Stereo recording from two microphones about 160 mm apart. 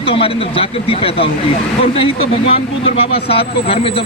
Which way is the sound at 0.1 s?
35° left (ahead or behind).